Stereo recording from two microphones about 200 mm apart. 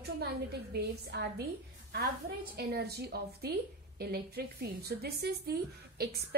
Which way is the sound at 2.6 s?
55° right (ahead or behind).